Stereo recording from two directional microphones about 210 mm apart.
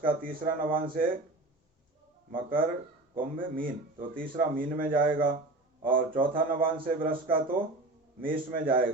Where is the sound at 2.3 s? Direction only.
40° right (ahead or behind).